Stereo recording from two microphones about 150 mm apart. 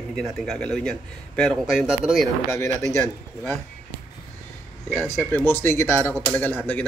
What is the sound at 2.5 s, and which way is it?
A man's voice, 20° left (ahead or behind).